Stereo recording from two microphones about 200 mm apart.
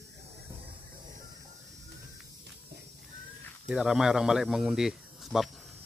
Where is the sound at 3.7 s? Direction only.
Centre (ahead or behind).